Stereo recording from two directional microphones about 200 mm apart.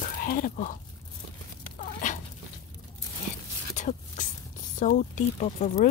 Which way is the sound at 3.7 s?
40° left (ahead or behind).